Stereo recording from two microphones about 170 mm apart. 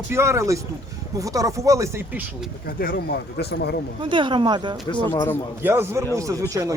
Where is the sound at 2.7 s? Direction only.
60° left (ahead or behind).